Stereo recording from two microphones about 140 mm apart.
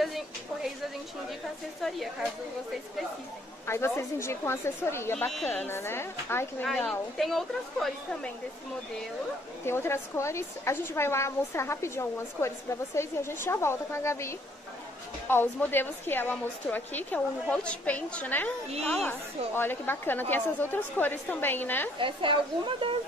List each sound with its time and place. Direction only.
0.0 s a sound: centre (ahead or behind)
3.6 s a woman's voice: 20° left (ahead or behind)
6.6 s a woman's voice: 5° left (ahead or behind)
9.7 s a woman's voice: 20° left (ahead or behind)
21.9 s speech: 35° right (ahead or behind)